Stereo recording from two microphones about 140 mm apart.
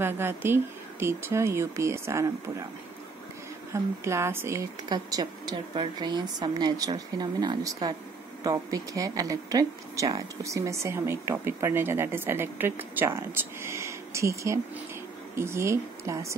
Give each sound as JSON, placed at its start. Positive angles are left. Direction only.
{"t": 0.0, "sound": "speech", "side_deg": -15}
{"t": 3.7, "sound": "speech", "side_deg": -20}
{"t": 4.8, "sound": "a woman's voice", "side_deg": -30}